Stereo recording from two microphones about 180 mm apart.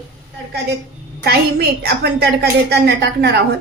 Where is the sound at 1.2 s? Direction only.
60° right (ahead or behind).